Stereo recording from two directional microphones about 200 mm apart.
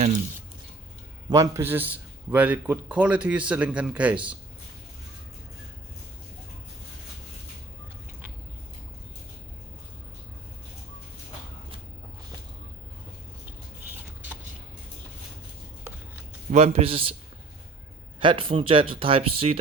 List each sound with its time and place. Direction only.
1.3 s a man's voice: 15° right (ahead or behind)
16.5 s speech: 30° right (ahead or behind)
18.2 s speech: 25° right (ahead or behind)